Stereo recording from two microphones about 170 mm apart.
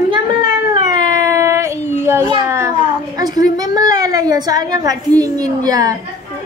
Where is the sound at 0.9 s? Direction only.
20° right (ahead or behind).